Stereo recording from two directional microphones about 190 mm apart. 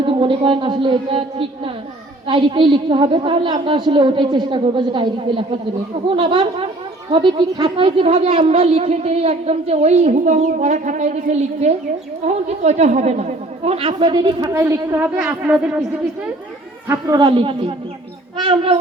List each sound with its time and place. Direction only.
0.0 s a woman's voice: 25° right (ahead or behind); by 15.8 s 5° right (ahead or behind)
16.9 s a woman's voice: 20° right (ahead or behind)